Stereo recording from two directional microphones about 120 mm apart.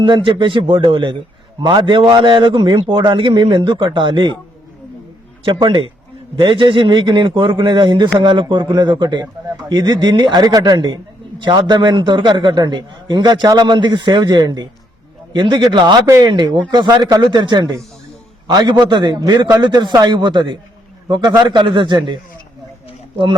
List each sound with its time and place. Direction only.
0.0 s a man's voice: 45° right (ahead or behind)
5.5 s a man's voice: 40° right (ahead or behind)